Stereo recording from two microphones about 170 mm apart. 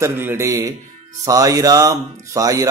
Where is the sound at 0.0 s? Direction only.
15° right (ahead or behind).